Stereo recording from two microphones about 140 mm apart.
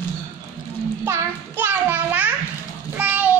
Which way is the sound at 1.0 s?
15° right (ahead or behind).